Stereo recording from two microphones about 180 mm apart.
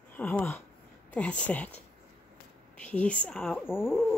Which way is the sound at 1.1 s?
5° left (ahead or behind).